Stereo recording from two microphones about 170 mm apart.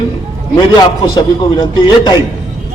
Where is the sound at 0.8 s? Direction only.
25° left (ahead or behind).